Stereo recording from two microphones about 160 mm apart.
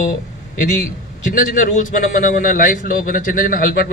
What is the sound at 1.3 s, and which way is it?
A man's voice, 60° left (ahead or behind).